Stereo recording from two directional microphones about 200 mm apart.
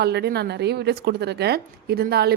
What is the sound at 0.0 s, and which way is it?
A woman's voice, 55° right (ahead or behind).